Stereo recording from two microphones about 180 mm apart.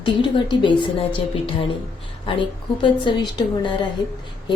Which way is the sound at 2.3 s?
25° left (ahead or behind).